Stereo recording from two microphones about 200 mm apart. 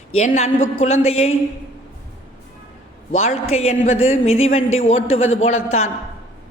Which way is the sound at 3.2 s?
30° left (ahead or behind).